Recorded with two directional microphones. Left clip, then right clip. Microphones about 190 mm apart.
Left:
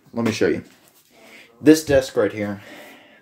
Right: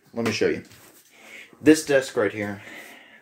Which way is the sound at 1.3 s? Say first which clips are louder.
Left 3 dB; 20° left (ahead or behind).